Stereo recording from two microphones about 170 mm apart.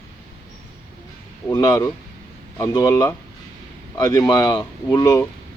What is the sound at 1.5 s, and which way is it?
Speech, 25° left (ahead or behind).